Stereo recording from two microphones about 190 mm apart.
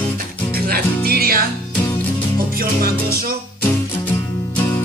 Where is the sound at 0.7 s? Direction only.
50° right (ahead or behind).